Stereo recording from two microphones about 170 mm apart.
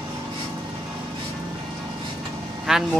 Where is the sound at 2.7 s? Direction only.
5° right (ahead or behind).